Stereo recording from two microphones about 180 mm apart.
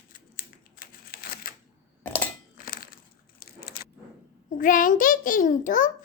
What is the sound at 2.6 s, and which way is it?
Crushing, 50° left (ahead or behind).